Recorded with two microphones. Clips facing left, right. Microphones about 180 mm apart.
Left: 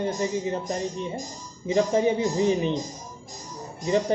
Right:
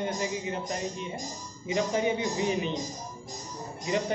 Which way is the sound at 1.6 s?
35° left (ahead or behind).